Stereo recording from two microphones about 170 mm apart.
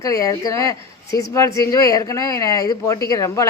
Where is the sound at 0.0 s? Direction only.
20° left (ahead or behind).